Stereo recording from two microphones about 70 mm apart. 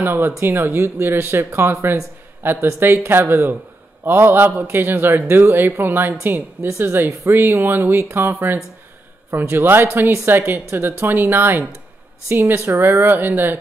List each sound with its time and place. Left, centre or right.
0.0 s a man's voice: right